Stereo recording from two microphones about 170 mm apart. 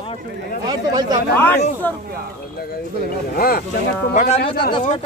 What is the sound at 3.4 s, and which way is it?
Speech, 60° left (ahead or behind).